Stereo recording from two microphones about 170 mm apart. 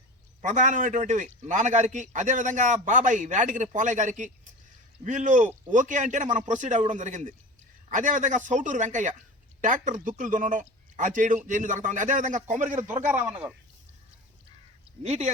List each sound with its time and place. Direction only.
0.4 s a man's voice: 45° right (ahead or behind)
13.1 s speech: 10° right (ahead or behind)
15.0 s speech: 40° right (ahead or behind)